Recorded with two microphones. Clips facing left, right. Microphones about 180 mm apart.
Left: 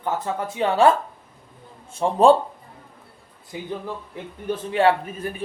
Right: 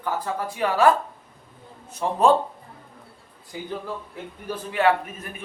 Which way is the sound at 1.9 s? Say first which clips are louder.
Left 4 dB; 30° left (ahead or behind).